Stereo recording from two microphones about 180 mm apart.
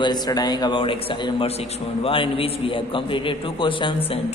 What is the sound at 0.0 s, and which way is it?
A man's voice, 20° left (ahead or behind).